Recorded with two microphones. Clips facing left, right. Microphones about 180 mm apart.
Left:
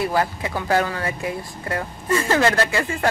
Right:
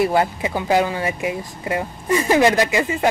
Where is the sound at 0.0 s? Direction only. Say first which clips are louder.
Right 4 dB; 25° right (ahead or behind).